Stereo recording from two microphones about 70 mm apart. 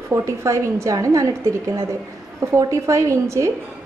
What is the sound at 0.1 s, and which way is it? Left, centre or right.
A woman's voice, right.